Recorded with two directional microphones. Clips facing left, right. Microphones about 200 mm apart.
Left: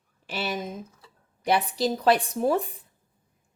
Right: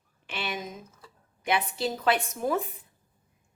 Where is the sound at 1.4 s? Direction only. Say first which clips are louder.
Left 4 dB; 35° left (ahead or behind).